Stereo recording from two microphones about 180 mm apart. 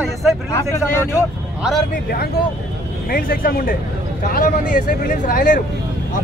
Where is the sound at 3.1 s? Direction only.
55° left (ahead or behind).